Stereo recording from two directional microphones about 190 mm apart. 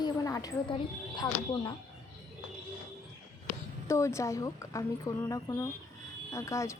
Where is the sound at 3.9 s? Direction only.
15° left (ahead or behind).